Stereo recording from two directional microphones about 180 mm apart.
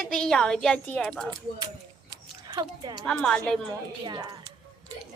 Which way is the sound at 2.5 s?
25° right (ahead or behind).